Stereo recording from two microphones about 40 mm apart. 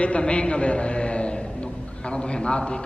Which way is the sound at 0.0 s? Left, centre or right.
Left.